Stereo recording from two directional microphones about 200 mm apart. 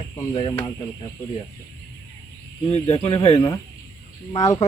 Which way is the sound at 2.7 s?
30° left (ahead or behind).